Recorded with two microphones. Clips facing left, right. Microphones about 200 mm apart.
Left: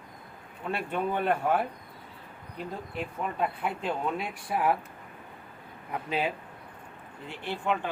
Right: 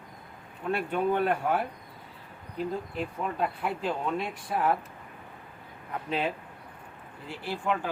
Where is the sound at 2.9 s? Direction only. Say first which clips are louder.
Right 1 dB; centre (ahead or behind).